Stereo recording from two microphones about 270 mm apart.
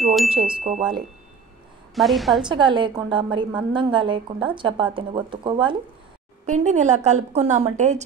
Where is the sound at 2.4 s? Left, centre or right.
Centre.